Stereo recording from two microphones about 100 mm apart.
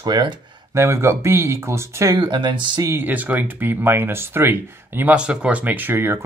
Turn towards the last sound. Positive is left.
turn(degrees=-20)  # may be behind; listen again after turning